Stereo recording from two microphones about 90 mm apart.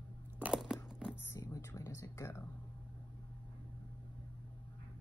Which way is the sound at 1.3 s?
40° left (ahead or behind).